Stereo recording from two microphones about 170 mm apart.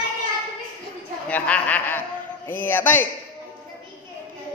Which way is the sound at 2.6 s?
10° left (ahead or behind).